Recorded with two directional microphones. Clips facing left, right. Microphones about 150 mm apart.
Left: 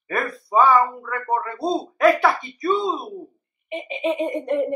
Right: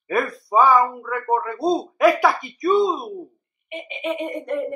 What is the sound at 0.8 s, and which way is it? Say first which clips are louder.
Speech: right 1 dB; 10° right (ahead or behind).